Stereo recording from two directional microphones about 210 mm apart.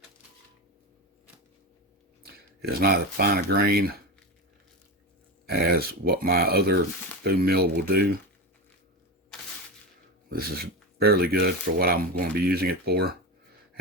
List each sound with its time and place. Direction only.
2.2 s speech: 50° right (ahead or behind)
5.5 s speech: 50° right (ahead or behind)
10.2 s speech: 45° right (ahead or behind)